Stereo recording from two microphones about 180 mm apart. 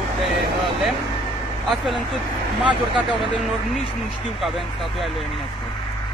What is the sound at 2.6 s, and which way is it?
Speech, 25° right (ahead or behind).